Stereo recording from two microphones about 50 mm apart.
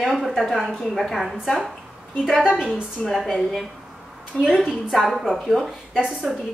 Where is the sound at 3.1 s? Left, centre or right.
Centre.